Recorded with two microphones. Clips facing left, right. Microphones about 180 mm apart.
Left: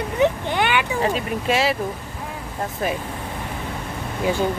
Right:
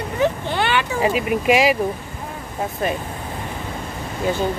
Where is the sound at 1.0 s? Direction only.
10° right (ahead or behind).